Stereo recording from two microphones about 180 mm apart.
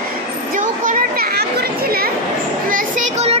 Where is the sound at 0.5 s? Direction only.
50° right (ahead or behind).